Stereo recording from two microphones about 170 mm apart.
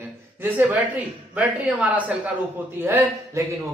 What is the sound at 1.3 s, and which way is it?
Speech, 5° right (ahead or behind).